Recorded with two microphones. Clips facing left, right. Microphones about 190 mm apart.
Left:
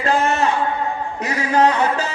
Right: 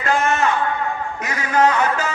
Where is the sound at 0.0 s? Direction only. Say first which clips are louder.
Left 1 dB; 35° left (ahead or behind).